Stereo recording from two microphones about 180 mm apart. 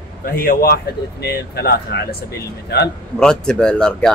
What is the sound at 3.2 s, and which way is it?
Speech, 5° left (ahead or behind).